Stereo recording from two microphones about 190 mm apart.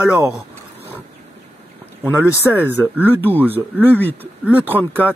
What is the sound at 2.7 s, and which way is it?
Speech, 10° right (ahead or behind).